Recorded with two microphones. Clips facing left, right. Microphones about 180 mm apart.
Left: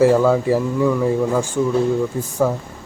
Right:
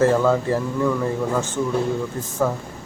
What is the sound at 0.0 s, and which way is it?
Speech, 10° left (ahead or behind).